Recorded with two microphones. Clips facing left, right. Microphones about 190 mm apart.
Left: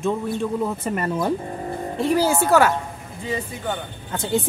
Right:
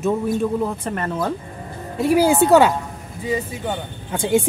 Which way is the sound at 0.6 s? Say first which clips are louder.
Even; 10° left (ahead or behind).